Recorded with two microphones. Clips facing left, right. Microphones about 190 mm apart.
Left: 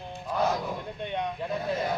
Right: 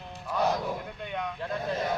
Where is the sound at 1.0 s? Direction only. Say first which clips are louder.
Left 4 dB; 25° left (ahead or behind).